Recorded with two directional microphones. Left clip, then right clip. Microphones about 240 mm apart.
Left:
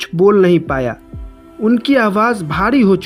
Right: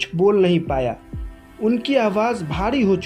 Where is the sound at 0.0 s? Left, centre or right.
Left.